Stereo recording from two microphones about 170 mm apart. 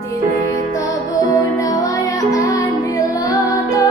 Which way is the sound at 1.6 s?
20° left (ahead or behind).